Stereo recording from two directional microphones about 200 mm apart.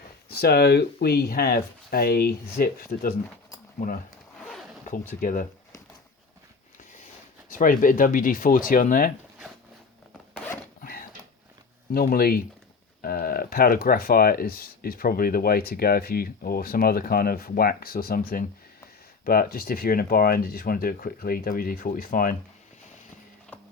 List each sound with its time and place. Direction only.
0.3 s speech: 50° left (ahead or behind)
5.2 s speech: 45° left (ahead or behind)
7.5 s speech: 45° left (ahead or behind)
10.8 s a sound: 50° left (ahead or behind)
11.9 s speech: 45° left (ahead or behind)